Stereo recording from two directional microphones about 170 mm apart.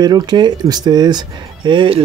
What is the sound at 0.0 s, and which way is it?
Speech, 25° right (ahead or behind).